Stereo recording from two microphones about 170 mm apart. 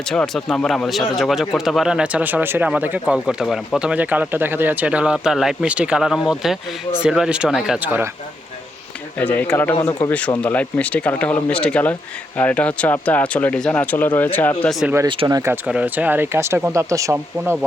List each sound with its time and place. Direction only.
0.1 s speech: 5° left (ahead or behind)
9.1 s speech: 10° left (ahead or behind)
15.0 s speech: 30° right (ahead or behind)
15.6 s speech: 5° right (ahead or behind)